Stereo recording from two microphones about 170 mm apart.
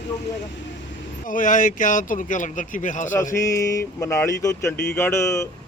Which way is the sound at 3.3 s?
20° left (ahead or behind).